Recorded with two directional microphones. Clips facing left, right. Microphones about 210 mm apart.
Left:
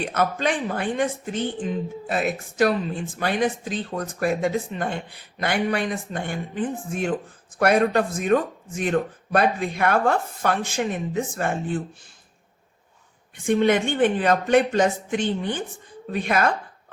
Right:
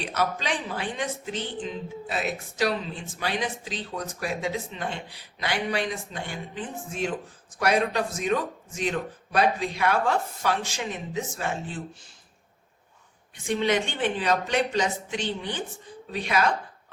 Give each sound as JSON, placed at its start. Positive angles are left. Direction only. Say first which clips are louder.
{"t": 0.0, "sound": "speech", "louder": "left 5 dB", "side_deg": 55}
{"t": 13.3, "sound": "speech", "louder": "left 5 dB", "side_deg": 55}